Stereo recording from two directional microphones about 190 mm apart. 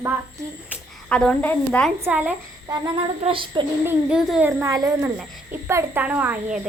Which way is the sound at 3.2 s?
25° right (ahead or behind).